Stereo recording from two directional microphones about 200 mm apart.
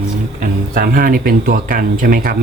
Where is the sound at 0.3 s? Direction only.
45° right (ahead or behind).